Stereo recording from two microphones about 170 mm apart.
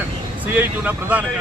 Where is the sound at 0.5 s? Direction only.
10° right (ahead or behind).